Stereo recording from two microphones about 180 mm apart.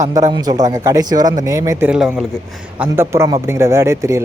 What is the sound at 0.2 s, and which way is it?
A man's voice, 25° right (ahead or behind).